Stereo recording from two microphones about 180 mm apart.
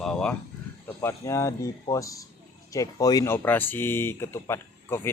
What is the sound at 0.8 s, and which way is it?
Speech, 15° left (ahead or behind).